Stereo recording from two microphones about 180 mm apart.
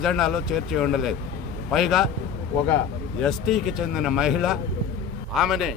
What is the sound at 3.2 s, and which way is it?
Speech, centre (ahead or behind).